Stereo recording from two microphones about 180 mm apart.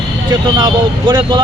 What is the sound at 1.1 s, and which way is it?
Speech, 25° right (ahead or behind).